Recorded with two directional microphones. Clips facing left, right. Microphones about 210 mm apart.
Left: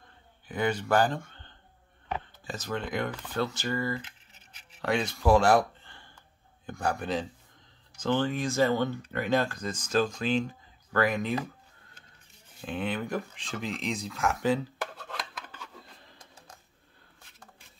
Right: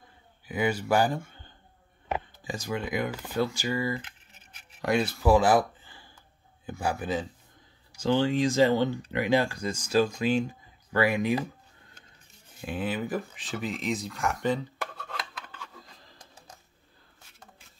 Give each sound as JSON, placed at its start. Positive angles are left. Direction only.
{"t": 0.5, "sound": "speech", "side_deg": -10}
{"t": 4.0, "sound": "scratch", "side_deg": -55}
{"t": 4.8, "sound": "speech", "side_deg": -5}
{"t": 12.6, "sound": "a sound", "side_deg": -5}